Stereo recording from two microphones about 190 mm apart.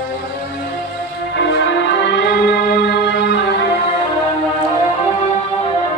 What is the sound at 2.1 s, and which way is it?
Music, 60° left (ahead or behind).